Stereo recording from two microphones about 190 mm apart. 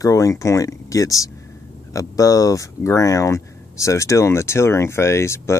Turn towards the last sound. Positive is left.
turn(degrees=15)  # may be behind; listen again after turning